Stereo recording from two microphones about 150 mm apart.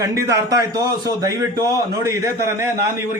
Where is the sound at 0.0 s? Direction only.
20° right (ahead or behind).